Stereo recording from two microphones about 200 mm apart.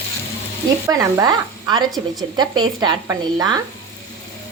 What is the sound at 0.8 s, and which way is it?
Speech, 15° right (ahead or behind).